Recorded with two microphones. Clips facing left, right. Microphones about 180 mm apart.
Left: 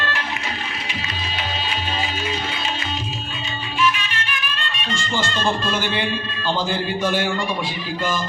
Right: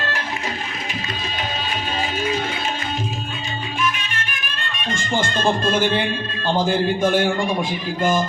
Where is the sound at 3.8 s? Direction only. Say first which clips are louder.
Left 4 dB; 50° right (ahead or behind).